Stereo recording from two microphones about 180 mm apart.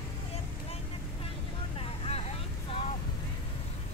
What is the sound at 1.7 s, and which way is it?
Vehicle, 35° left (ahead or behind).